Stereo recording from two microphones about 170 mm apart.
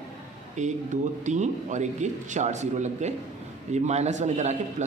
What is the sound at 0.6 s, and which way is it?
A man's voice, 45° right (ahead or behind).